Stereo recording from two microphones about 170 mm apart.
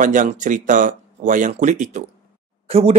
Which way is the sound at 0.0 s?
50° right (ahead or behind).